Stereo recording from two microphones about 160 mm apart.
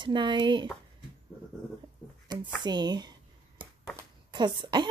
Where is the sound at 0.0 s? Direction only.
30° right (ahead or behind).